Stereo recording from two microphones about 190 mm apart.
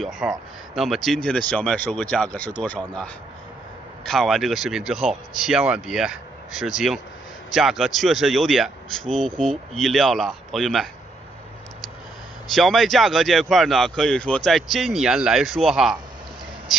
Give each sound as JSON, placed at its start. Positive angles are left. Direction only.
{"t": 0.0, "sound": "speech", "side_deg": 0}
{"t": 7.5, "sound": "speech", "side_deg": 0}
{"t": 12.5, "sound": "speech", "side_deg": 0}